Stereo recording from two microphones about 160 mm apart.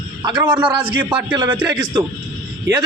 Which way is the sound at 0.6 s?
30° right (ahead or behind).